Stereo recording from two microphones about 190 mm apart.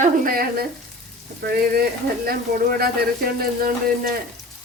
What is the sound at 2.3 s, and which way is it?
Speech, 50° right (ahead or behind).